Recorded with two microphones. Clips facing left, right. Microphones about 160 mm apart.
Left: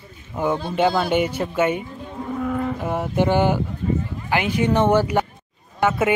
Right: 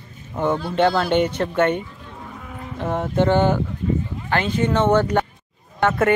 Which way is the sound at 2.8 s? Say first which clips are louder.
Right 5 dB; 10° left (ahead or behind).